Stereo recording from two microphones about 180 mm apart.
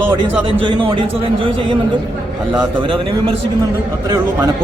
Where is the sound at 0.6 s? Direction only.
30° right (ahead or behind).